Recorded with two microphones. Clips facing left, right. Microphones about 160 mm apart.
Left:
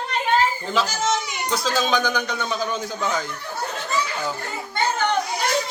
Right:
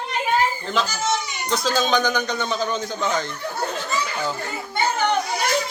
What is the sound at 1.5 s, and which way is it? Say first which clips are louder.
A man's voice: right 2 dB; 5° left (ahead or behind).